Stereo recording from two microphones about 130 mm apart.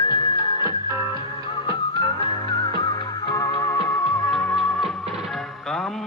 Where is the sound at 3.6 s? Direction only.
15° left (ahead or behind).